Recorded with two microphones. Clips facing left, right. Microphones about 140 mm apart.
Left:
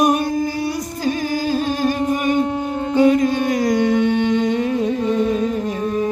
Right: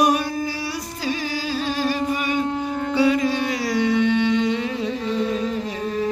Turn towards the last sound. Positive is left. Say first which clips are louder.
# left 5 dB
turn(degrees=50)  # may be behind; listen again after turning